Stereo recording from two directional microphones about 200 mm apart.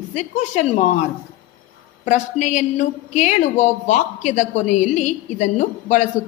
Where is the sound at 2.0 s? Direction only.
40° left (ahead or behind).